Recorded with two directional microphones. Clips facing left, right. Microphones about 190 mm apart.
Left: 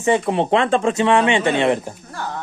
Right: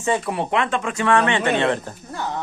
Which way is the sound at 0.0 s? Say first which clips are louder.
Left 5 dB; 20° left (ahead or behind).